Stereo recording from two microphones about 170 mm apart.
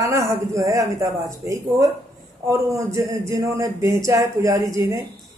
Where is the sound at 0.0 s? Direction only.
20° right (ahead or behind).